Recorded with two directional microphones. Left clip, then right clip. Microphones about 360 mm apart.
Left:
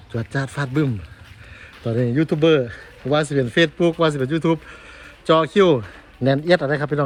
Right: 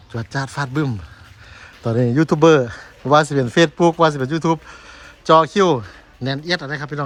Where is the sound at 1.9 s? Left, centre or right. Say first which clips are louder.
Right 3 dB; right.